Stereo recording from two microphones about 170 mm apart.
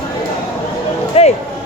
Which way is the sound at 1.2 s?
35° left (ahead or behind).